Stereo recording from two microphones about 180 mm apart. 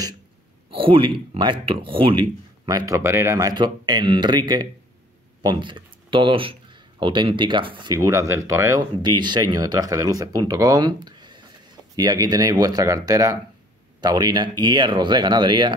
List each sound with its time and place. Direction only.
0.7 s speech: 30° right (ahead or behind)